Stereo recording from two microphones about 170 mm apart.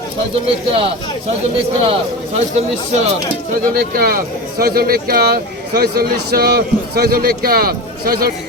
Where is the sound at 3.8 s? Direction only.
60° right (ahead or behind).